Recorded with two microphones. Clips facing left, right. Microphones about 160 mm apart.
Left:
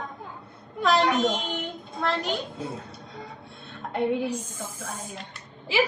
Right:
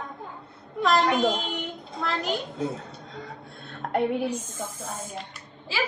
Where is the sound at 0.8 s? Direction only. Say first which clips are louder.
Even; centre (ahead or behind).